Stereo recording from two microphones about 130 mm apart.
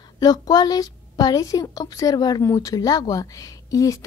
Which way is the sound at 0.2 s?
30° left (ahead or behind).